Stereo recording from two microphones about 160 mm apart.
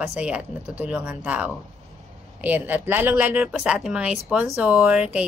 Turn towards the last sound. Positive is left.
turn(degrees=-10)  # may be behind; listen again after turning